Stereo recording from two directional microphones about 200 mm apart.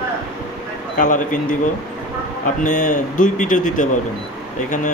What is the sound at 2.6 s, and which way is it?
Speech, 40° left (ahead or behind).